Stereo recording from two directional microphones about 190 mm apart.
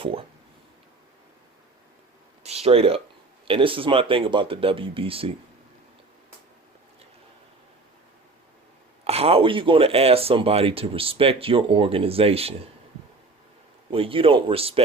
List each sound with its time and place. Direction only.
0.0 s speech: 30° right (ahead or behind)
2.4 s a sound: 35° right (ahead or behind)
3.4 s speech: 30° right (ahead or behind)
9.0 s speech: 30° right (ahead or behind)
13.9 s speech: 30° right (ahead or behind)